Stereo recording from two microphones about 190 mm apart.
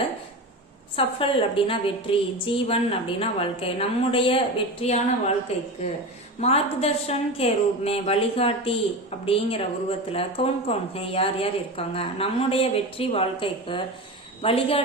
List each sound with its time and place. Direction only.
0.9 s a woman's voice: 30° left (ahead or behind)
6.4 s a woman's voice: 35° left (ahead or behind)